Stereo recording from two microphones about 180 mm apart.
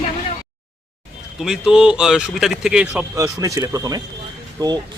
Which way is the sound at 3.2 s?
20° right (ahead or behind).